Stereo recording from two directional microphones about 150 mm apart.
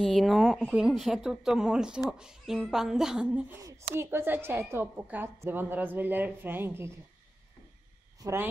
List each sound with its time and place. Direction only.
0.0 s speech: centre (ahead or behind)
3.6 s a woman's voice: 20° right (ahead or behind)
8.2 s speech: 20° right (ahead or behind)